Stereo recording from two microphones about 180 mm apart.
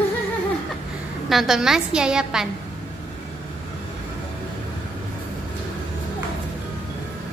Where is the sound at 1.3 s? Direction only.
Centre (ahead or behind).